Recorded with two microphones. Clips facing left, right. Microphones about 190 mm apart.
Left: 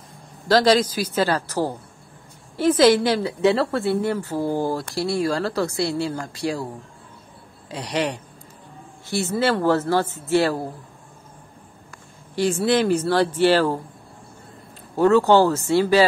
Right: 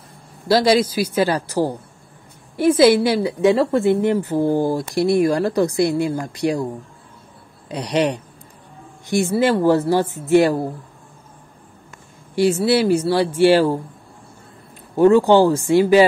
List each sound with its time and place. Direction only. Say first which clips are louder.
0.5 s a woman's voice: right 2 dB; 10° right (ahead or behind)
7.6 s a woman's voice: right 5 dB; 20° right (ahead or behind)
12.4 s a woman's voice: right 3 dB; 10° right (ahead or behind)
15.0 s a woman's voice: right 3 dB; 15° right (ahead or behind)